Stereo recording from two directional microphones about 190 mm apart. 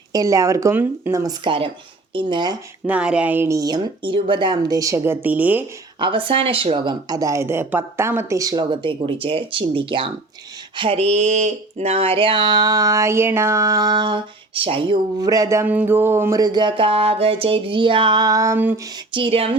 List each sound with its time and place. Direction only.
0.1 s speech: 20° right (ahead or behind)
2.8 s speech: 5° right (ahead or behind)
6.0 s speech: 25° right (ahead or behind); by 18.8 s 10° right (ahead or behind)
19.1 s speech: 30° right (ahead or behind)